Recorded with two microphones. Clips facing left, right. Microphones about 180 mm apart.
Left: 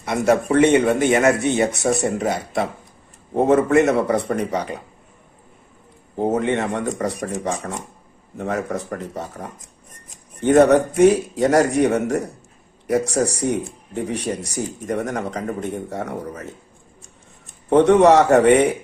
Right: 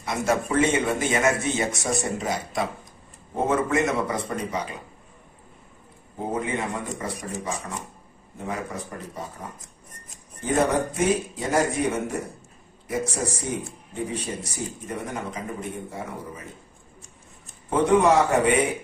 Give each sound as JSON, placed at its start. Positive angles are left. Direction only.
{"t": 0.1, "sound": "speech", "side_deg": 65}
{"t": 4.1, "sound": "speech", "side_deg": 65}
{"t": 6.1, "sound": "speech", "side_deg": 75}
{"t": 17.6, "sound": "speech", "side_deg": 75}